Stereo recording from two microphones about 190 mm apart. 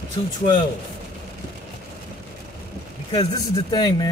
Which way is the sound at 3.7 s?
20° left (ahead or behind).